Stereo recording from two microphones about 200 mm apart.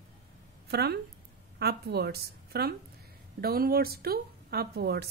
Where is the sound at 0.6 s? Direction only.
55° right (ahead or behind).